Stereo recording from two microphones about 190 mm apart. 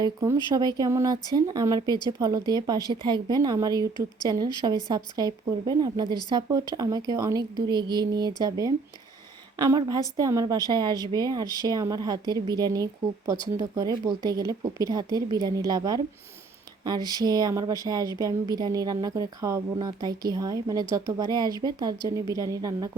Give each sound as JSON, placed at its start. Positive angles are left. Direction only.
{"t": 0.0, "sound": "a woman's voice", "side_deg": -20}
{"t": 4.9, "sound": "a woman's voice", "side_deg": -20}